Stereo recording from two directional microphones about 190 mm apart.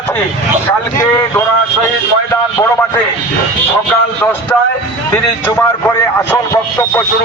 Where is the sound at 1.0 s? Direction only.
15° left (ahead or behind).